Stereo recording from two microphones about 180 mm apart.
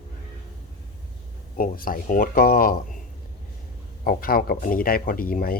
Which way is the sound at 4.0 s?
55° left (ahead or behind).